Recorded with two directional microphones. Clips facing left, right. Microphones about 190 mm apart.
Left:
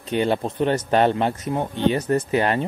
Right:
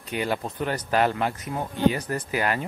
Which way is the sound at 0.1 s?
25° left (ahead or behind).